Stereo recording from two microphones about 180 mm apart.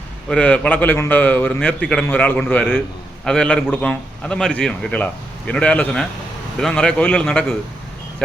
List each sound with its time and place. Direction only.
0.3 s a man's voice: 5° left (ahead or behind)